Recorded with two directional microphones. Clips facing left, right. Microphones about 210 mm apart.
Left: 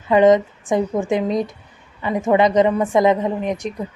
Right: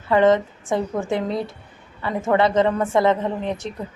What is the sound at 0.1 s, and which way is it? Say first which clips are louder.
Speech: left 3 dB; 15° left (ahead or behind).